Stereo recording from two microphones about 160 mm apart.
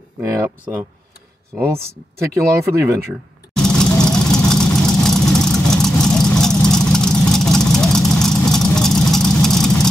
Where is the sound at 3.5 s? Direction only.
5° left (ahead or behind).